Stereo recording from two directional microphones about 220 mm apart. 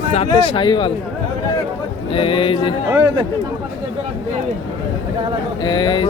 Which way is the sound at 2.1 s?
25° left (ahead or behind).